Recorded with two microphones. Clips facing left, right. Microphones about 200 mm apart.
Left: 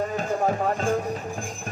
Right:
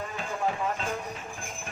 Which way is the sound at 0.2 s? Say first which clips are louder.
Left 3 dB; 45° left (ahead or behind).